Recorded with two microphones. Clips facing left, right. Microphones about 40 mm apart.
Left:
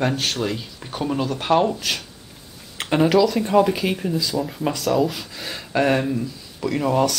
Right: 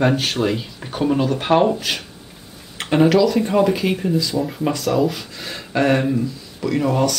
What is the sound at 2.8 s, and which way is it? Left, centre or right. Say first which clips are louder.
Speech: right 2 dB; centre.